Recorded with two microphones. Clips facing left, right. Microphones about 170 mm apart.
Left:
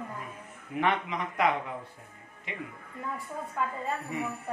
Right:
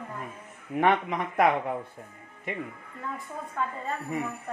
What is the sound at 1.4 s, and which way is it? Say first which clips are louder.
Speech: right 5 dB; 55° right (ahead or behind).